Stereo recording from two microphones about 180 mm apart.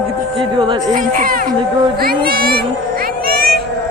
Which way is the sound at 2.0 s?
55° right (ahead or behind).